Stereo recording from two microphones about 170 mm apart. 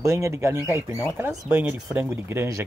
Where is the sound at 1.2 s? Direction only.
10° right (ahead or behind).